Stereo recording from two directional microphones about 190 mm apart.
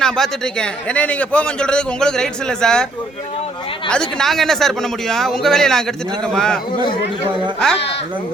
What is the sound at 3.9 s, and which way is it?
A man's voice, 5° left (ahead or behind).